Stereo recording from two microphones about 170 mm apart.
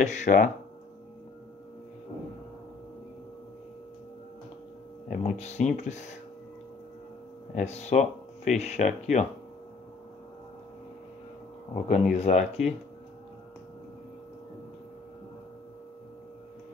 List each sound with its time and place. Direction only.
0.0 s speech: 45° left (ahead or behind)
5.0 s speech: 45° left (ahead or behind)
7.5 s speech: 40° left (ahead or behind)
11.7 s speech: 45° left (ahead or behind)